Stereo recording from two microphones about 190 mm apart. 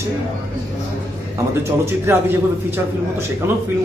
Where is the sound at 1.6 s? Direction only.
15° right (ahead or behind).